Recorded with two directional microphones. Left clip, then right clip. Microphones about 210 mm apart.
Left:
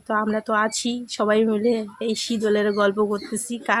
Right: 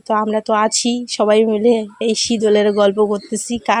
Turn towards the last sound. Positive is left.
turn(degrees=-25)  # may be behind; listen again after turning